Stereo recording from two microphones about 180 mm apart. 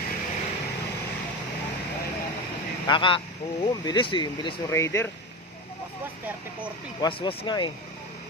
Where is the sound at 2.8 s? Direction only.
25° left (ahead or behind).